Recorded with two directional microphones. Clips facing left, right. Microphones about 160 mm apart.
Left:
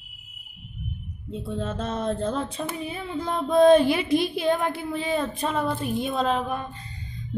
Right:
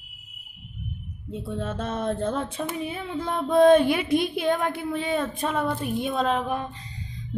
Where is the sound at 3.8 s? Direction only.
55° right (ahead or behind).